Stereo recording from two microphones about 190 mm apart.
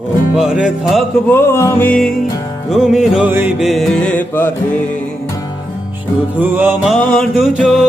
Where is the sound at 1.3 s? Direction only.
15° left (ahead or behind).